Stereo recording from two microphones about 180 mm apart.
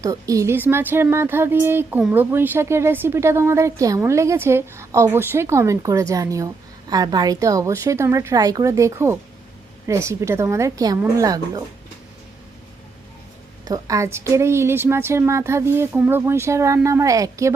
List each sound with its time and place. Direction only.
0.0 s speech: 20° right (ahead or behind)
13.7 s speech: 20° right (ahead or behind)